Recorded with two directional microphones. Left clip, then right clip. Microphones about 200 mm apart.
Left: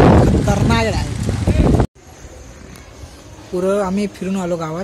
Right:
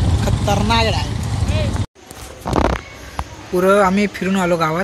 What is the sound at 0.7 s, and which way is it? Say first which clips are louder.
Vehicle: right 1 dB; 45° left (ahead or behind).